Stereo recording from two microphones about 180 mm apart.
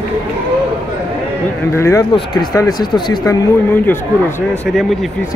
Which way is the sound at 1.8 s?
15° left (ahead or behind).